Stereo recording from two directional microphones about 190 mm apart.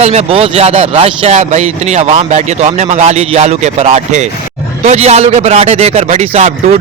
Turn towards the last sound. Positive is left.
turn(degrees=-35)  # may be behind; listen again after turning